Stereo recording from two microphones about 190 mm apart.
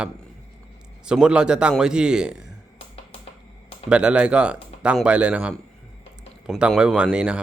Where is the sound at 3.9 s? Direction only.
5° right (ahead or behind).